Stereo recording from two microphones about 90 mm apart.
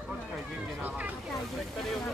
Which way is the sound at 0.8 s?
15° right (ahead or behind).